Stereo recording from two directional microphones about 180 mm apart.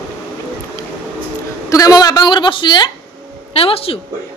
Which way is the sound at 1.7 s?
20° left (ahead or behind).